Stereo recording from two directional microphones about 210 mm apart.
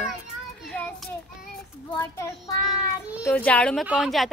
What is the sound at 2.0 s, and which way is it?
Speech, 15° left (ahead or behind).